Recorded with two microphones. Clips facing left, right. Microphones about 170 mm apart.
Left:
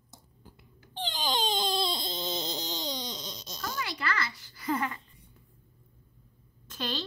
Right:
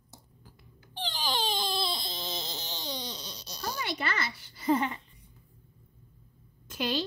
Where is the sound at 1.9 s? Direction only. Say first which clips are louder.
Left 3 dB; 20° left (ahead or behind).